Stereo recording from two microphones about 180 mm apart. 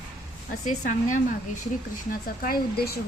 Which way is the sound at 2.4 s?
55° left (ahead or behind).